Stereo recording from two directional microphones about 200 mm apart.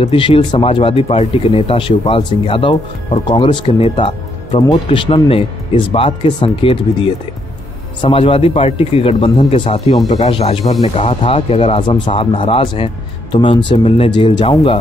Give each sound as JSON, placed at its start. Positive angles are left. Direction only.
{"t": 0.0, "sound": "speech", "side_deg": 25}